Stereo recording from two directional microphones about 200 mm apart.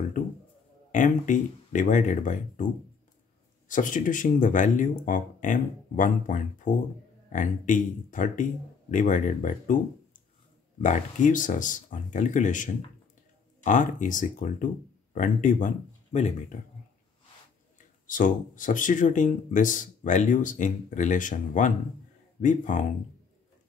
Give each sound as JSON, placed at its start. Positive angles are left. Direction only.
{"t": 0.9, "sound": "speech", "side_deg": 40}
{"t": 10.8, "sound": "speech", "side_deg": 40}
{"t": 18.0, "sound": "speech", "side_deg": 40}